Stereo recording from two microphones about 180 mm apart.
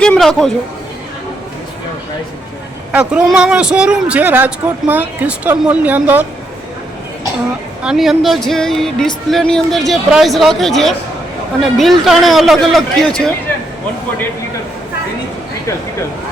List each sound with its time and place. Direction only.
0.0 s a sound: 5° left (ahead or behind)
2.9 s speech: 5° right (ahead or behind)
7.8 s speech: 5° right (ahead or behind)